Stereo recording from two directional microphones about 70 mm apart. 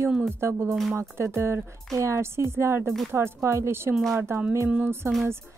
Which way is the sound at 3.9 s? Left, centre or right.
Centre.